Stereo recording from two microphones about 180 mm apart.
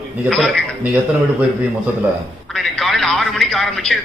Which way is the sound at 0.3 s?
Centre (ahead or behind).